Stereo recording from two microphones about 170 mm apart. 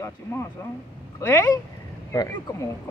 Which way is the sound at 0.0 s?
15° left (ahead or behind).